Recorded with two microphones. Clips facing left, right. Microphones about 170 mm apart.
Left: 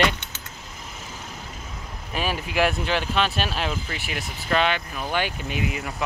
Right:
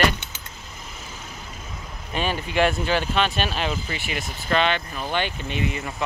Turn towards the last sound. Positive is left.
turn(degrees=5)  # may be behind; listen again after turning